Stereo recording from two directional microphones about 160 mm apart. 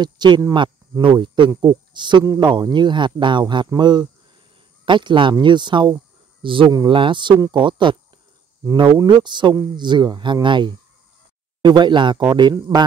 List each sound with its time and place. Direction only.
0.0 s speech: 25° right (ahead or behind)